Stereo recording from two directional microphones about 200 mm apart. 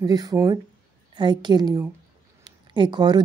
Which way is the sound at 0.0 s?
20° right (ahead or behind).